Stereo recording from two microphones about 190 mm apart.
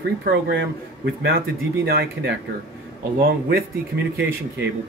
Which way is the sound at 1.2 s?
55° right (ahead or behind).